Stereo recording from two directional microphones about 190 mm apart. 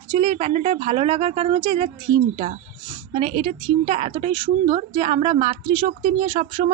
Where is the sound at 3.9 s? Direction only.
30° right (ahead or behind).